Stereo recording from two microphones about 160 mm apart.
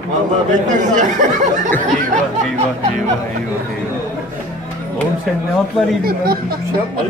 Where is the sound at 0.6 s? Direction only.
50° right (ahead or behind).